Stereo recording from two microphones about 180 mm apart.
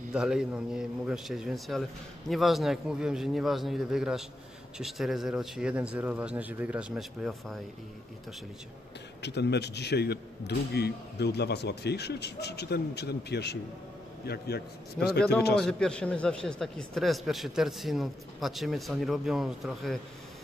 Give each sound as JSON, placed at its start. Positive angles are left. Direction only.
{"t": 0.1, "sound": "a man's voice", "side_deg": -5}
{"t": 9.2, "sound": "speech", "side_deg": 70}
{"t": 15.6, "sound": "a man's voice", "side_deg": 5}